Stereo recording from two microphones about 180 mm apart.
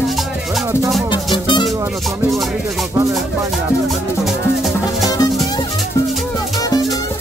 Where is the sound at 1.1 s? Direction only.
25° left (ahead or behind).